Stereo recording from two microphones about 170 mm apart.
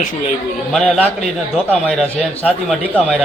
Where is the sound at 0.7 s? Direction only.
Centre (ahead or behind).